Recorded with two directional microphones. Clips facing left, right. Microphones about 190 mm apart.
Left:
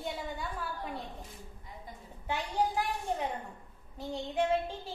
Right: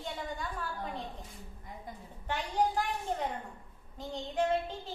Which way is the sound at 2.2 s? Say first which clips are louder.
Right 1 dB; 10° left (ahead or behind).